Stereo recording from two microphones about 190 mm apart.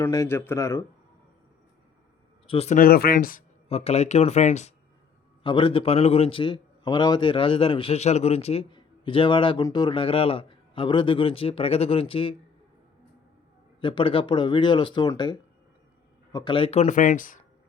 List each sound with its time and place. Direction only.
0.0 s speech: 15° left (ahead or behind)
2.5 s speech: 35° left (ahead or behind)
2.7 s speech: 50° left (ahead or behind)
3.7 s speech: 35° left (ahead or behind)
5.4 s a man's voice: 25° left (ahead or behind)
13.8 s a man's voice: 25° left (ahead or behind); by 17.4 s 45° left (ahead or behind)